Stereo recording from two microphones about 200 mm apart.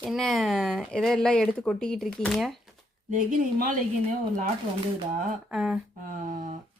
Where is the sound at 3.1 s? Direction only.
40° right (ahead or behind).